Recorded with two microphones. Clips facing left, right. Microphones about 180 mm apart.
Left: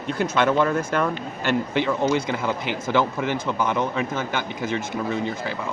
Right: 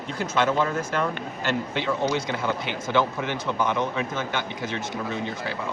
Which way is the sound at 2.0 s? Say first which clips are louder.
Left 3 dB; 50° left (ahead or behind).